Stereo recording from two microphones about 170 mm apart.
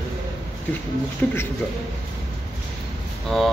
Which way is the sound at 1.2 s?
10° left (ahead or behind).